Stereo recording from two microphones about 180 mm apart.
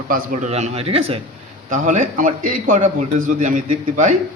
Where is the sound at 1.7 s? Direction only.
45° right (ahead or behind).